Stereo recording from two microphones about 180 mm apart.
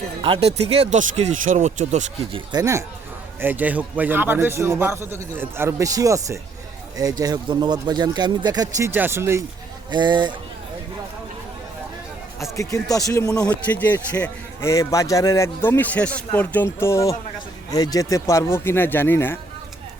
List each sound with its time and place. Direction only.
0.2 s speech: 30° right (ahead or behind)
2.5 s a man's voice: 20° right (ahead or behind)
9.9 s speech: 25° right (ahead or behind)
12.5 s a man's voice: 15° left (ahead or behind)
13.4 s a man's voice: 5° left (ahead or behind)